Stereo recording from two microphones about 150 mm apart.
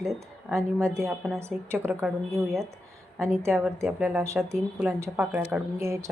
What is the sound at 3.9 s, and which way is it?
A woman's voice, 10° right (ahead or behind).